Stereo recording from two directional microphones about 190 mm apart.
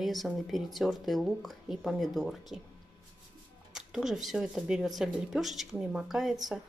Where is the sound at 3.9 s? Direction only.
Centre (ahead or behind).